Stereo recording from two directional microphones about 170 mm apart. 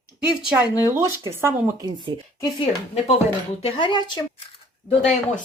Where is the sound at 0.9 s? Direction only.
15° right (ahead or behind).